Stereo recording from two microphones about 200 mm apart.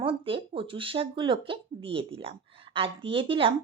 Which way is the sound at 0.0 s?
25° right (ahead or behind).